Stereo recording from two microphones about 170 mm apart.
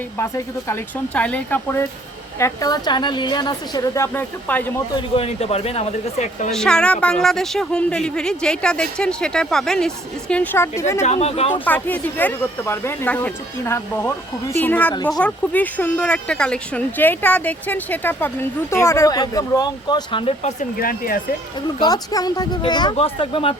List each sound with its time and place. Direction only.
0.2 s a woman's voice: 15° left (ahead or behind)
4.9 s speech: 35° left (ahead or behind)
6.5 s speech: 5° left (ahead or behind)
11.0 s speech: 40° left (ahead or behind)
11.6 s speech: 10° left (ahead or behind); by 20.7 s 35° left (ahead or behind)
20.7 s speech: 60° left (ahead or behind)
21.8 s a woman's voice: 25° left (ahead or behind)